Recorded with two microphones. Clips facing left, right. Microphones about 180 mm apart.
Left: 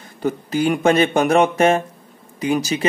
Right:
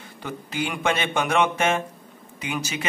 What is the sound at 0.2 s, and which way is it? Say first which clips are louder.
Speech: left 10 dB; 40° left (ahead or behind).